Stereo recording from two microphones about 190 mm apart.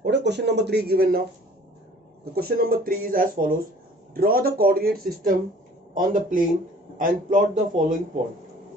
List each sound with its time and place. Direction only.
0.0 s speech: 65° right (ahead or behind)
2.3 s speech: 50° right (ahead or behind)